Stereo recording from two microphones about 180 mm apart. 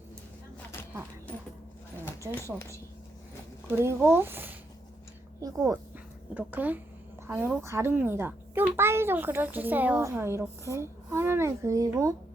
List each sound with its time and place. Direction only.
2.6 s a woman's voice: 15° left (ahead or behind)
3.7 s a child's voice: 15° right (ahead or behind)